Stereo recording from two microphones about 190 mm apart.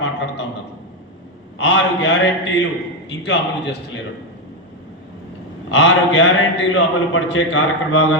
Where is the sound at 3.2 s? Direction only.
65° left (ahead or behind).